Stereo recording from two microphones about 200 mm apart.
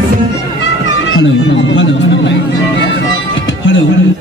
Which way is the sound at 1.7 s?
70° left (ahead or behind).